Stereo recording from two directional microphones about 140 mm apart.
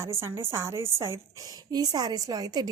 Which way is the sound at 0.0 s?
20° right (ahead or behind).